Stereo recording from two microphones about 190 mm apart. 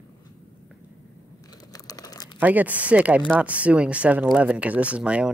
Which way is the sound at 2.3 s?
10° right (ahead or behind).